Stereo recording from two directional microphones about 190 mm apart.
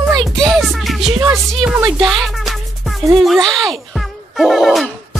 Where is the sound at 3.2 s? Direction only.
Centre (ahead or behind).